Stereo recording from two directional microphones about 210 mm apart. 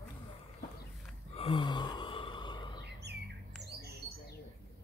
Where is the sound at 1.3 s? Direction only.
25° left (ahead or behind).